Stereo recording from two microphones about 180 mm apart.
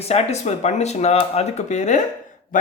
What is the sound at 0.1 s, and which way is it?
Speech, 40° left (ahead or behind).